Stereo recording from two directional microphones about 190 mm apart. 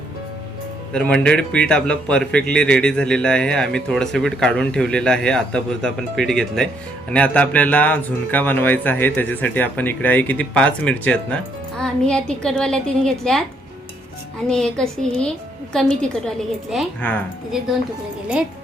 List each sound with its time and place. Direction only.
0.9 s a man's voice: 5° left (ahead or behind)
14.4 s a man's voice: 5° left (ahead or behind)